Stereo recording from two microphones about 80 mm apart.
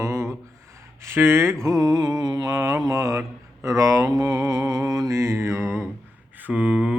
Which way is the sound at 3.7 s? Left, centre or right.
Right.